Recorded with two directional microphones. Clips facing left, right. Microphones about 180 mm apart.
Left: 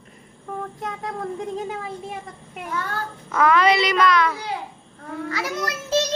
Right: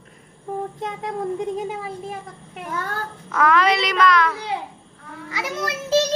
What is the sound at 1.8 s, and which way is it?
A child's voice, centre (ahead or behind).